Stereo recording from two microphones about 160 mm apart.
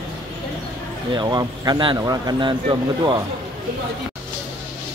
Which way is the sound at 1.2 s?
25° right (ahead or behind).